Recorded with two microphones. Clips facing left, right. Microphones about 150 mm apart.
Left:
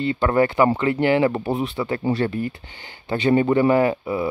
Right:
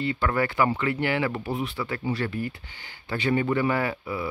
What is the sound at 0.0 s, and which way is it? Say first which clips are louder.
Speech: left 7 dB; 25° left (ahead or behind).